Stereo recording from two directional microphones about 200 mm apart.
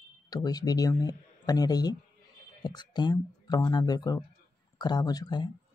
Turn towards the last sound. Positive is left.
turn(degrees=20)  # may be behind; listen again after turning